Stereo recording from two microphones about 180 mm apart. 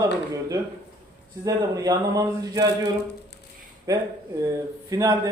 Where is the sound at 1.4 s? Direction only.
20° right (ahead or behind).